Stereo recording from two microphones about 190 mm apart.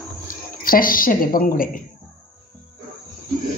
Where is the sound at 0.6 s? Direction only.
50° left (ahead or behind).